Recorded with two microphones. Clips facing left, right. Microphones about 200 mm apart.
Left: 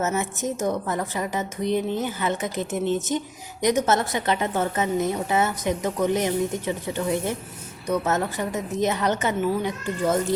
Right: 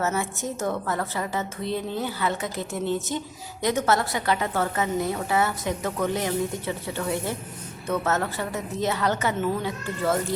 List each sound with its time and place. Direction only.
0.0 s a woman's voice: 20° left (ahead or behind)